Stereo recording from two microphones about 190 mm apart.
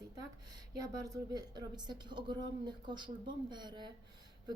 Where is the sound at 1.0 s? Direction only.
20° right (ahead or behind).